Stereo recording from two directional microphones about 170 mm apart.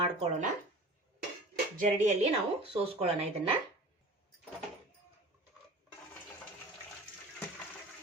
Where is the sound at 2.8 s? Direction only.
35° right (ahead or behind).